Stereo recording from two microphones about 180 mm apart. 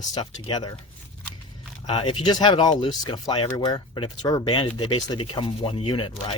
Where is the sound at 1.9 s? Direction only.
30° left (ahead or behind).